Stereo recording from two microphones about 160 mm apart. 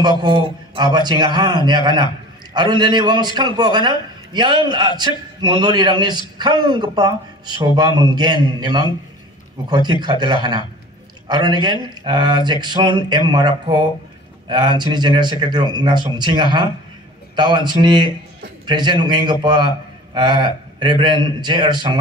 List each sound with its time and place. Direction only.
0.2 s speech: 30° right (ahead or behind)